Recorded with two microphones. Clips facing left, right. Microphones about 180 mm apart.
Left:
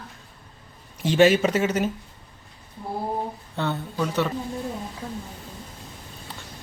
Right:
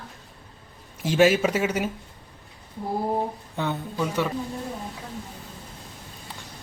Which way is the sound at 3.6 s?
10° right (ahead or behind).